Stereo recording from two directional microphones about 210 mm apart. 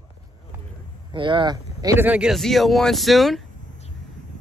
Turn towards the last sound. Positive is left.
turn(degrees=0)  # may be behind; listen again after turning